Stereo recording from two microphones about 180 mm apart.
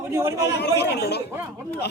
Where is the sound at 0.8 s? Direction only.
65° left (ahead or behind).